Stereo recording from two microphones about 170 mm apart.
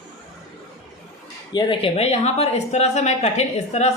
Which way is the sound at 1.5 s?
25° left (ahead or behind).